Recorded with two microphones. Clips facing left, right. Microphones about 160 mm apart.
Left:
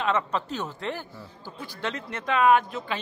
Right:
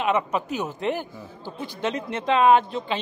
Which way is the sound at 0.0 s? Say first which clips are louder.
Right 3 dB; 15° right (ahead or behind).